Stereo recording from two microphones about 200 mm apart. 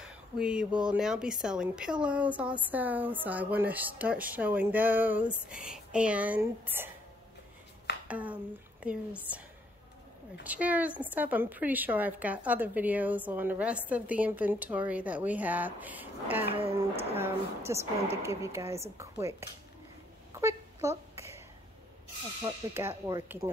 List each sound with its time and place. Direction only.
0.0 s speech: 5° right (ahead or behind)
8.1 s speech: 5° right (ahead or behind)
10.4 s speech: 5° right (ahead or behind)
16.4 s speech: 30° right (ahead or behind)
17.7 s speech: 15° right (ahead or behind)
20.3 s a sound: 15° right (ahead or behind)
22.4 s speech: 15° right (ahead or behind)